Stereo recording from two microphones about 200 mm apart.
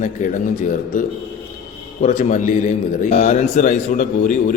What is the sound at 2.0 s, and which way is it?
A man's voice, 35° left (ahead or behind).